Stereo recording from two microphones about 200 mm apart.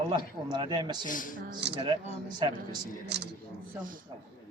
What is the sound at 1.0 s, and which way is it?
Speech, 40° left (ahead or behind).